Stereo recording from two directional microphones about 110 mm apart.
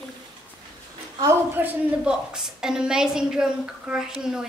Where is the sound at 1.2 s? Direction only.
20° right (ahead or behind).